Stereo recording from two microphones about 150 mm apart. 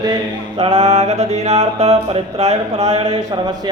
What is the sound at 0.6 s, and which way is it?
Mantra, 45° right (ahead or behind).